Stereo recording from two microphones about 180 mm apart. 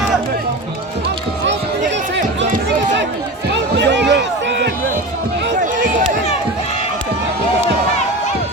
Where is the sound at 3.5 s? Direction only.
80° right.